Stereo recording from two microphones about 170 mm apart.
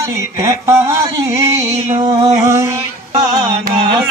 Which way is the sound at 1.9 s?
30° right (ahead or behind).